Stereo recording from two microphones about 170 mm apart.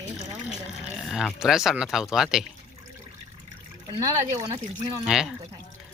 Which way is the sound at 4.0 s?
15° right (ahead or behind).